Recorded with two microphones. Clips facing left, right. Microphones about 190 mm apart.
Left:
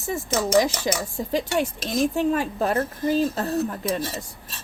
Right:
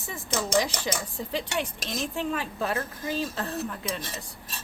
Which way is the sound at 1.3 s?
45° left (ahead or behind).